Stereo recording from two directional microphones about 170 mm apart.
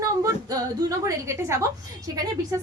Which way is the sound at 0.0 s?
20° right (ahead or behind).